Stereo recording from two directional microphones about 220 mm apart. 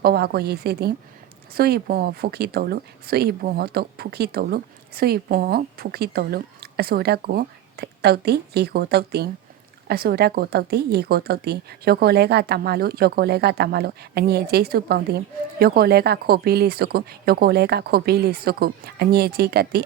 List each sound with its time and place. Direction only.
0.0 s speech: 45° right (ahead or behind)